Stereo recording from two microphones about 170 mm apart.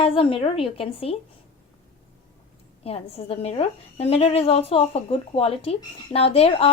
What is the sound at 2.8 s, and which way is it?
A woman's voice, 35° left (ahead or behind).